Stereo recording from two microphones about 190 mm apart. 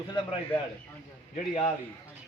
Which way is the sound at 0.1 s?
25° left (ahead or behind).